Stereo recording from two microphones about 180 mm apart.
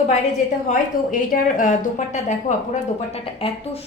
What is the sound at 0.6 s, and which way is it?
Speech, 50° left (ahead or behind).